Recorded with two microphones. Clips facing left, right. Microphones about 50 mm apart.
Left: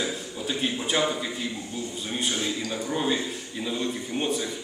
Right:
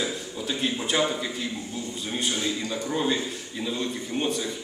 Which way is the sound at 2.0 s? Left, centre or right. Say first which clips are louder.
Right 1 dB; centre.